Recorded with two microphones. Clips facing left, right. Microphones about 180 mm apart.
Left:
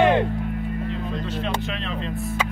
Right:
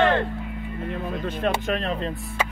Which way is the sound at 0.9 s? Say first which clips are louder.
Even; 50° right (ahead or behind).